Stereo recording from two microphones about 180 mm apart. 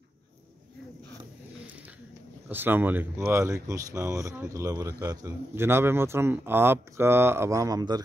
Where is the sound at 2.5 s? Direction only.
10° right (ahead or behind).